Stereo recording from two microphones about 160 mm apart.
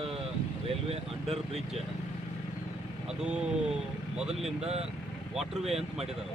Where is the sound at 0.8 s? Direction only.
40° right (ahead or behind).